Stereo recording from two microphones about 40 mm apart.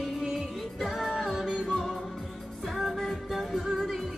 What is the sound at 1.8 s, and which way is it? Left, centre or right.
Music, centre.